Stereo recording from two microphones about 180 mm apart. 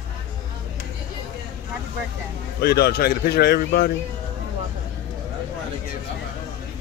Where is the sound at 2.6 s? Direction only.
60° left (ahead or behind).